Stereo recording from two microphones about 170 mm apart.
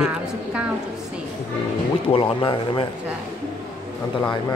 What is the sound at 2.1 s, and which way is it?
Speech, 30° left (ahead or behind).